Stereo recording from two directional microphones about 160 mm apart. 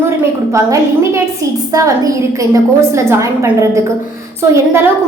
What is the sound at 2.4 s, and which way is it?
A woman's voice, 20° right (ahead or behind).